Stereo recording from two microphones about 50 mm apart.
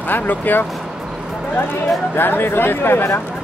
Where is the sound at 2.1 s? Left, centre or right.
Left.